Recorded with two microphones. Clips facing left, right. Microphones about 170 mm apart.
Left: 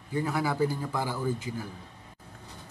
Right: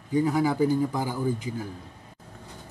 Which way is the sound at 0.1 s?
15° right (ahead or behind).